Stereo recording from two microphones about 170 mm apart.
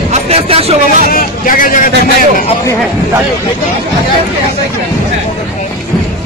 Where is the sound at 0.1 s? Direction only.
35° right (ahead or behind).